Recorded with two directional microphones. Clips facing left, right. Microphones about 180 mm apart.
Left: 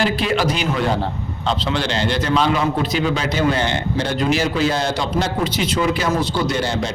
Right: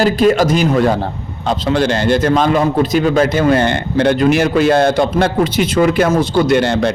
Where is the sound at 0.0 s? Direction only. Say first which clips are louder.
Right 7 dB; 45° right (ahead or behind).